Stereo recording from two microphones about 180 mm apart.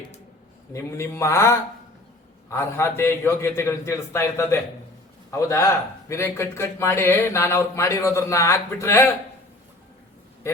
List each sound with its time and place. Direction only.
0.7 s speech: 15° left (ahead or behind)